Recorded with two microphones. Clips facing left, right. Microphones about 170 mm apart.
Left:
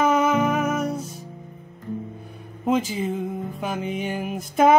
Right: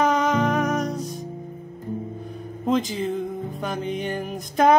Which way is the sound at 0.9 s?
35° right (ahead or behind).